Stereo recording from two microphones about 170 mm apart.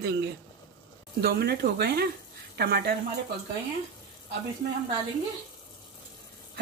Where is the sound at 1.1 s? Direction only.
70° right (ahead or behind).